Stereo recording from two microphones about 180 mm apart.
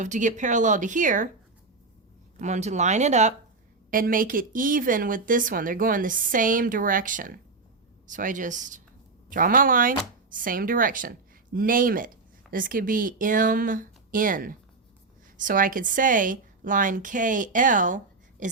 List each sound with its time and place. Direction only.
0.0 s speech: 45° right (ahead or behind)
2.4 s speech: 40° right (ahead or behind)
3.9 s speech: 50° right (ahead or behind)